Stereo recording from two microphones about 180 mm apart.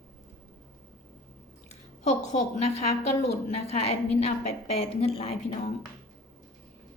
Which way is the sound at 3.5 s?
35° left (ahead or behind).